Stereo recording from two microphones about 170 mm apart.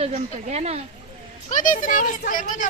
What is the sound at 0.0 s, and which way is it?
Speech, 40° right (ahead or behind).